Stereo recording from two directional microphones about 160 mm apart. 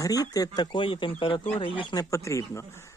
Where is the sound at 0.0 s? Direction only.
25° left (ahead or behind).